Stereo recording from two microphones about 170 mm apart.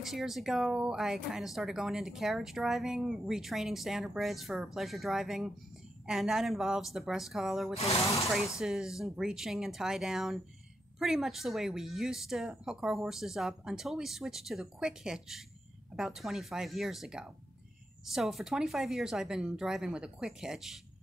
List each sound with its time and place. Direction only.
0.0 s speech: centre (ahead or behind)
7.7 s speech: 40° left (ahead or behind)
8.5 s speech: 5° right (ahead or behind)